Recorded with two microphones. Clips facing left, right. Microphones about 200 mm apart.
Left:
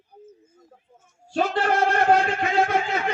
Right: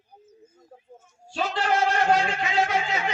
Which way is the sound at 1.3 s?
55° left (ahead or behind).